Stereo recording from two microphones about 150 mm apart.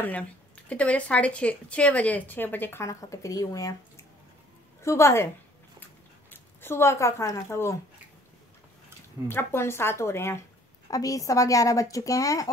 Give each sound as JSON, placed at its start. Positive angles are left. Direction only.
{"t": 0.0, "sound": "a woman's voice", "side_deg": 10}
{"t": 6.3, "sound": "speech", "side_deg": 15}
{"t": 9.3, "sound": "a woman's voice", "side_deg": 15}